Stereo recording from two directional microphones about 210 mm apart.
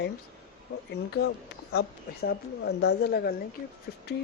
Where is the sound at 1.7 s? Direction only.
50° left (ahead or behind).